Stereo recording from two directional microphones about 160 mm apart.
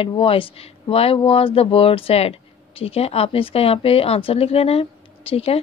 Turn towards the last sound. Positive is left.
turn(degrees=40)  # may be behind; listen again after turning